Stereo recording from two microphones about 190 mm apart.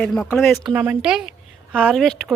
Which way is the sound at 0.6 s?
10° right (ahead or behind).